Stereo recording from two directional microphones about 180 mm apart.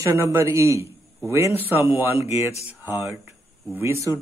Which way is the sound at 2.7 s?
10° right (ahead or behind).